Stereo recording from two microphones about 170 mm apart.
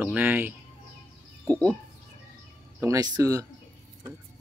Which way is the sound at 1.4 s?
10° left (ahead or behind).